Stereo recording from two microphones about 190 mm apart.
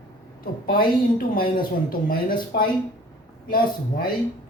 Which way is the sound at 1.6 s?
50° left (ahead or behind).